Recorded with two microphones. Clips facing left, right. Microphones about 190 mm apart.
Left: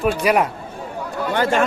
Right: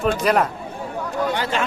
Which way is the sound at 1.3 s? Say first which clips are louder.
Left 5 dB; 50° left (ahead or behind).